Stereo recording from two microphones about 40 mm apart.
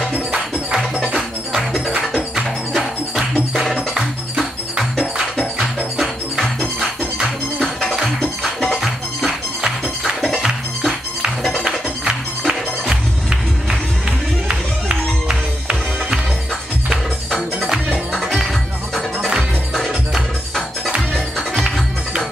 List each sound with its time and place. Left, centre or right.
0.1 s music: right
0.9 s music: centre
3.7 s music: centre
7.5 s music: centre
8.8 s music: centre
11.6 s music: centre
14.5 s music: centre
19.7 s music: centre